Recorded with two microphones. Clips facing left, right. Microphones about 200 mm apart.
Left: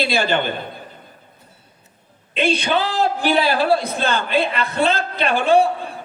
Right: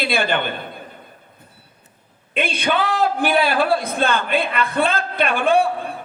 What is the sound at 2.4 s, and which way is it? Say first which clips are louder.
A woman's voice: left 2 dB; 55° right (ahead or behind).